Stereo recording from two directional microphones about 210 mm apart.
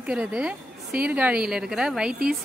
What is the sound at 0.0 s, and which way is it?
Speech, 5° right (ahead or behind).